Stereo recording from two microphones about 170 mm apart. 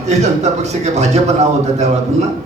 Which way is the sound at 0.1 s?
40° right (ahead or behind).